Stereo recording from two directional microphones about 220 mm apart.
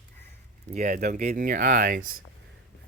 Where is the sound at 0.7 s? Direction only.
40° right (ahead or behind).